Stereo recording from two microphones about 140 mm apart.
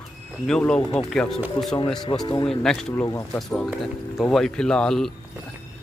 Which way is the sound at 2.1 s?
40° left (ahead or behind).